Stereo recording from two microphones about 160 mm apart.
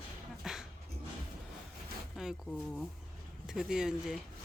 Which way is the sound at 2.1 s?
5° right (ahead or behind).